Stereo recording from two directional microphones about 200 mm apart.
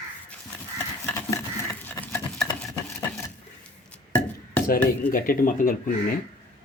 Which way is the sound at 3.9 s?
5° left (ahead or behind).